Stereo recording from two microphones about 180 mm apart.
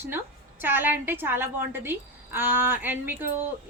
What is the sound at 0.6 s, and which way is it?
A woman's voice, 10° right (ahead or behind).